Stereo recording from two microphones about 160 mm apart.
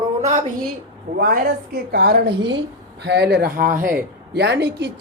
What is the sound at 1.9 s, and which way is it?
Speech, 75° right (ahead or behind).